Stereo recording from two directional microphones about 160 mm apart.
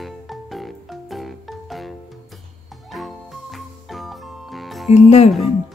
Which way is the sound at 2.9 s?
Centre (ahead or behind).